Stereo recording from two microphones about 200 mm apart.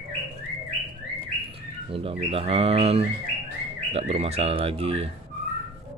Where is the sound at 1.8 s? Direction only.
30° right (ahead or behind).